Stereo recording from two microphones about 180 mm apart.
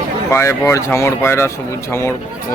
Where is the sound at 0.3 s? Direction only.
15° left (ahead or behind).